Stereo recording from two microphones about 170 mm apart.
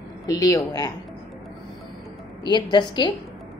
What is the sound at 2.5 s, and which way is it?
Speech, 25° left (ahead or behind).